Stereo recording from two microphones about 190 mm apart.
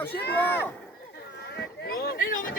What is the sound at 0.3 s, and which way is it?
Speech, 10° left (ahead or behind).